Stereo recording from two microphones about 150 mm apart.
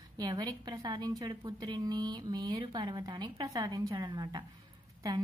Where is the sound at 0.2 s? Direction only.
25° right (ahead or behind).